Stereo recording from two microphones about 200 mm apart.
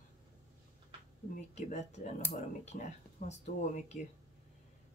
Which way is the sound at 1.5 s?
35° left (ahead or behind).